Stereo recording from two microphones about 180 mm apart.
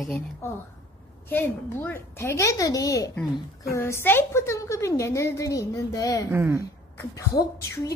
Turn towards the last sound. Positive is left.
turn(degrees=15)  # may be behind; listen again after turning